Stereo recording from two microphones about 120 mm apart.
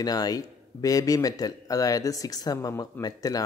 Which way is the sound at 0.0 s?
30° left (ahead or behind).